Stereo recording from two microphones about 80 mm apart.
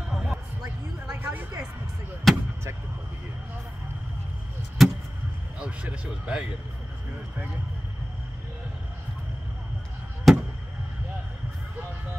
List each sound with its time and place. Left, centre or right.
0.1 s music: centre
1.1 s a sound: right
2.3 s vehicle: centre
4.8 s vehicle: centre
5.6 s speech: centre
10.3 s a sound: centre